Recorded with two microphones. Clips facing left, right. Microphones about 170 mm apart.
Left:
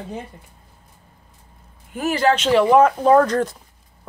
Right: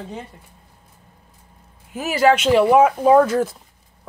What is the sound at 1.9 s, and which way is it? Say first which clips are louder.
Speech: right 2 dB; 5° right (ahead or behind).